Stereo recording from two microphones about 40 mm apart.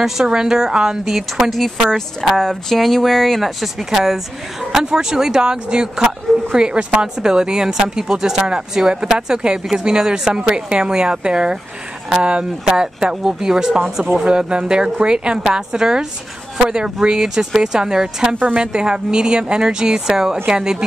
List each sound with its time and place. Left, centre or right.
0.0 s speech: centre
1.5 s speech: centre; by 7.1 s right
7.2 s speech: centre
12.6 s speech: centre